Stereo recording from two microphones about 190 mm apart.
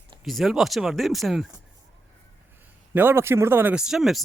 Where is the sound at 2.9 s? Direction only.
10° right (ahead or behind).